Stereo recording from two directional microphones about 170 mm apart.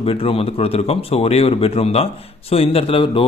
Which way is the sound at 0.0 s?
35° left (ahead or behind).